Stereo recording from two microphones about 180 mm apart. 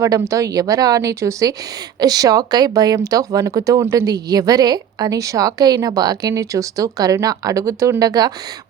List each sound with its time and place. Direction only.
0.0 s speech: 15° right (ahead or behind)